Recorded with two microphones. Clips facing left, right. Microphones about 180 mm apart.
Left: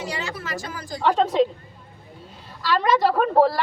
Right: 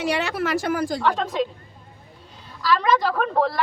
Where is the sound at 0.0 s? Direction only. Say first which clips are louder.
Right 7 dB; 65° right (ahead or behind).